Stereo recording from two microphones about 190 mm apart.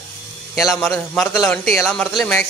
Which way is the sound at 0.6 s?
Centre (ahead or behind).